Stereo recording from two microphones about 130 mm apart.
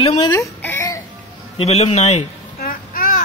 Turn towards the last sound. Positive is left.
turn(degrees=90)